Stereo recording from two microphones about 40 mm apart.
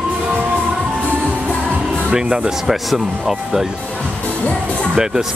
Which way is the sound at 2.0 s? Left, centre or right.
Centre.